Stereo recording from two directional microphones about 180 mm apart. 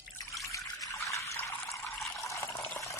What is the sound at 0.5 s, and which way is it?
Water, 15° left (ahead or behind).